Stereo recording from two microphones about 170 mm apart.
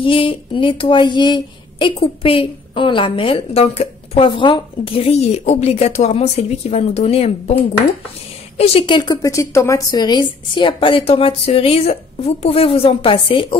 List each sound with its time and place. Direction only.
0.0 s speech: 30° left (ahead or behind)